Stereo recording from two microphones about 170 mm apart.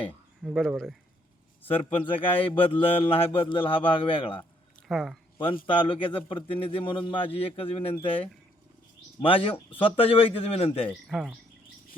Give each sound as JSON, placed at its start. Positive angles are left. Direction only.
{"t": 0.4, "sound": "speech", "side_deg": 0}
{"t": 1.6, "sound": "a man's voice", "side_deg": 30}
{"t": 4.9, "sound": "speech", "side_deg": 0}
{"t": 5.6, "sound": "a man's voice", "side_deg": 30}
{"t": 11.1, "sound": "speech", "side_deg": -5}